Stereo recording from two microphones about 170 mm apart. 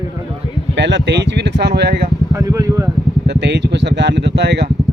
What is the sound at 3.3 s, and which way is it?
Speech, 80° right.